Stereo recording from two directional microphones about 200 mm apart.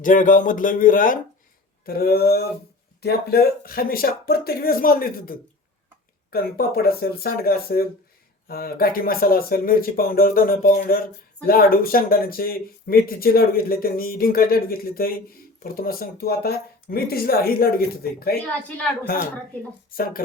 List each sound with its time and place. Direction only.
0.0 s speech: 40° left (ahead or behind)
19.9 s speech: 45° left (ahead or behind)